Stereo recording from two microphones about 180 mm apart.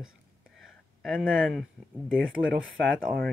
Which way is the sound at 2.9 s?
60° right (ahead or behind).